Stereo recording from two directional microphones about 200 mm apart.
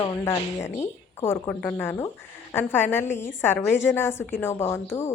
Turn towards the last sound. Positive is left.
turn(degrees=10)  # may be behind; listen again after turning